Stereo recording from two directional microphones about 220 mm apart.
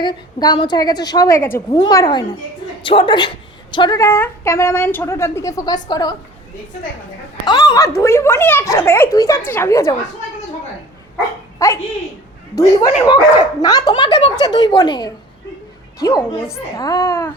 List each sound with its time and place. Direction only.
0.0 s a woman's voice: 20° left (ahead or behind)
7.4 s a woman's voice: 20° left (ahead or behind)
11.6 s a woman's voice: 10° left (ahead or behind)